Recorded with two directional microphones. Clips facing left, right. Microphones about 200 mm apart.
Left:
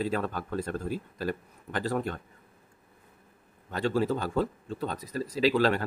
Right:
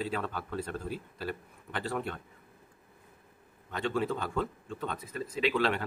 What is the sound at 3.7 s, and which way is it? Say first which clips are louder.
Speech: left 4 dB; 40° left (ahead or behind).